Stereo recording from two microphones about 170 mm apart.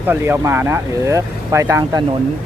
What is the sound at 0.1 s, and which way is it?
Speech, 15° right (ahead or behind).